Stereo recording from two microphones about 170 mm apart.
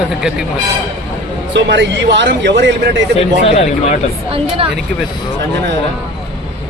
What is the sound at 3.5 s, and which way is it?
Speech, 40° left (ahead or behind).